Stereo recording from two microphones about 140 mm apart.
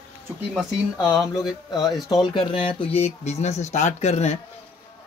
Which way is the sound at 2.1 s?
35° left (ahead or behind).